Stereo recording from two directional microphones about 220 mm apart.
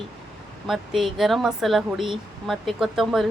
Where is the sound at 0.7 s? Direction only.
Centre (ahead or behind).